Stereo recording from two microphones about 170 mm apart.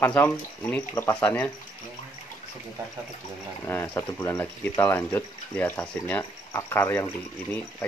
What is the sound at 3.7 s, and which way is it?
Speech, 15° left (ahead or behind).